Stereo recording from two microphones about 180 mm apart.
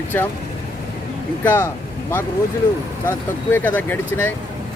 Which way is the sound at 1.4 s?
10° left (ahead or behind).